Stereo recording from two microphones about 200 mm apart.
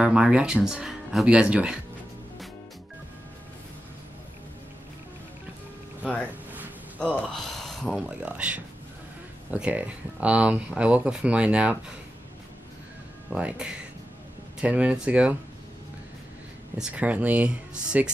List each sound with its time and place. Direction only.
0.0 s speech: 5° right (ahead or behind)
7.0 s speech: 5° left (ahead or behind)
13.3 s speech: 5° right (ahead or behind)
16.7 s speech: 5° right (ahead or behind)